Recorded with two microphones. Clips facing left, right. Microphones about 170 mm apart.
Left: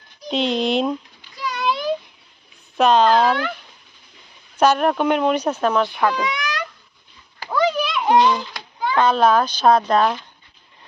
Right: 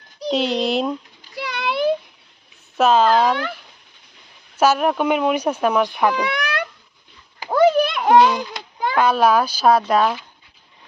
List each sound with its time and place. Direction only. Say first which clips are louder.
0.3 s speech: left 1 dB; 5° right (ahead or behind)
1.4 s a sound: right 1 dB; 65° right (ahead or behind)
2.7 s speech: even; 5° right (ahead or behind)
4.5 s speech: even; 5° right (ahead or behind)
6.2 s cat: right 2 dB; 60° right (ahead or behind)
7.5 s children playing: right 5 dB; 50° right (ahead or behind)
8.1 s speech: right 2 dB; 5° right (ahead or behind)